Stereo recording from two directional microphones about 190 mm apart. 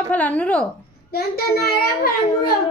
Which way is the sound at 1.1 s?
55° left (ahead or behind).